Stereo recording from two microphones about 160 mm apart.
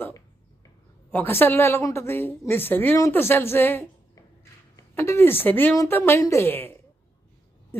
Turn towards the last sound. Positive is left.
turn(degrees=15)  # may be behind; listen again after turning